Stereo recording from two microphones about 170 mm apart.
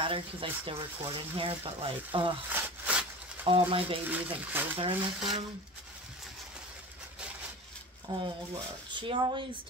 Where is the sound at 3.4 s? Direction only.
30° right (ahead or behind).